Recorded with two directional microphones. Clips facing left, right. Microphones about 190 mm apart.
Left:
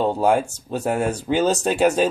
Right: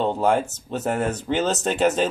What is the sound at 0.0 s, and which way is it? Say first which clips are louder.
Speech: left 2 dB; 10° left (ahead or behind).